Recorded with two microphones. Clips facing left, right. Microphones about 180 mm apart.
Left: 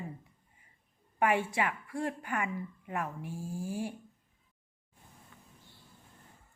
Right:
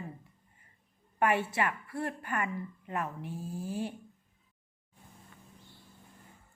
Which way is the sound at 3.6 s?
10° left (ahead or behind).